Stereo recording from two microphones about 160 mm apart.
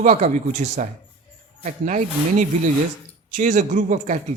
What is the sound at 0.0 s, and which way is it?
A man's voice, 50° right (ahead or behind).